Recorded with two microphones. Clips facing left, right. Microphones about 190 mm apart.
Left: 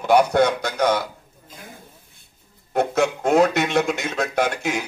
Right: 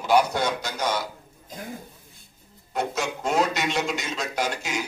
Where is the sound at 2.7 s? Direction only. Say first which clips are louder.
Left 8 dB; 60° left (ahead or behind).